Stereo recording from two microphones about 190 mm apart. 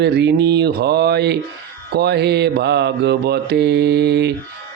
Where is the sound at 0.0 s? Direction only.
60° right (ahead or behind).